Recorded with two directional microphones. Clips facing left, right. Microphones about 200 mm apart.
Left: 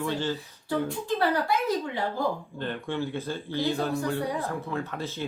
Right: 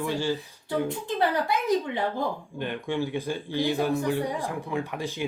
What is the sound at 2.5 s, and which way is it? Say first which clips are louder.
A man's voice: right 2 dB; 15° right (ahead or behind).